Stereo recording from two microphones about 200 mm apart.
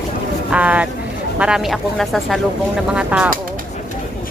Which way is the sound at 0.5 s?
5° right (ahead or behind).